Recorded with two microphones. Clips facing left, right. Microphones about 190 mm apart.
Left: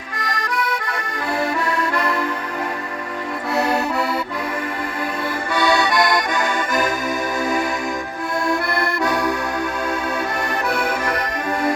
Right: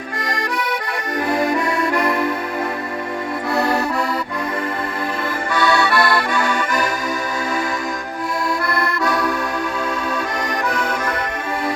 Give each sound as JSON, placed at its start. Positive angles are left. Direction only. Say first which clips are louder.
{"t": 0.3, "sound": "accordion", "louder": "even", "side_deg": -20}
{"t": 3.5, "sound": "accordion", "louder": "even", "side_deg": 0}
{"t": 5.5, "sound": "accordion", "louder": "even", "side_deg": 15}